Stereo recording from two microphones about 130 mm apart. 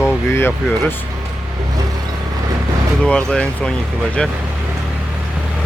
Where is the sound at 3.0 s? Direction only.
10° left (ahead or behind).